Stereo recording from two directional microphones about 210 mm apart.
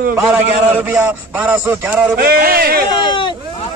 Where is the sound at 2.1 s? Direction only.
45° right (ahead or behind).